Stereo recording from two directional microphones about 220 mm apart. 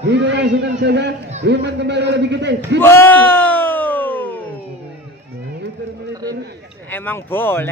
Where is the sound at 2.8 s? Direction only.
10° left (ahead or behind).